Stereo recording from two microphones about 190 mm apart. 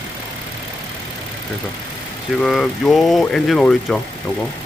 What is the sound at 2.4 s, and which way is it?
Speech, centre (ahead or behind).